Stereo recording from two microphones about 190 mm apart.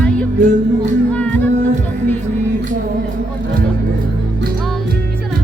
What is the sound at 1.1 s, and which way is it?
Music, 5° left (ahead or behind).